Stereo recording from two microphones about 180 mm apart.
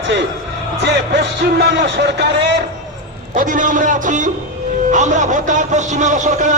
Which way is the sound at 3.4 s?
45° right (ahead or behind).